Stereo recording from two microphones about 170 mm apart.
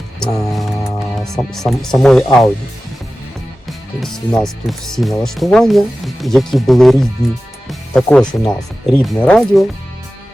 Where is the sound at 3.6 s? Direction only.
Centre (ahead or behind).